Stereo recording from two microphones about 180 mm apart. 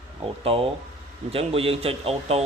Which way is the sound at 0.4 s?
30° right (ahead or behind).